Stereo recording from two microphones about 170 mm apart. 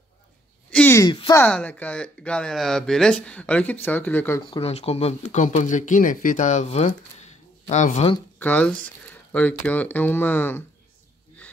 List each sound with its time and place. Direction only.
0.7 s a sound: 10° left (ahead or behind)
1.0 s speech: 30° left (ahead or behind)
1.3 s speech: 10° left (ahead or behind)
4.4 s speech: 35° left (ahead or behind)
8.4 s speech: 10° left (ahead or behind)